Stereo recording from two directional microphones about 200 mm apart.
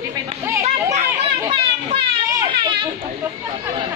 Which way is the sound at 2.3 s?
20° right (ahead or behind).